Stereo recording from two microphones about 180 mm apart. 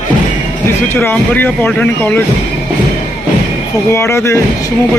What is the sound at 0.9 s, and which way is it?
Speech, 10° left (ahead or behind).